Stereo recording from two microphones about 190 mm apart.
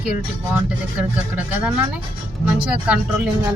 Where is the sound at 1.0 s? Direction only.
5° right (ahead or behind).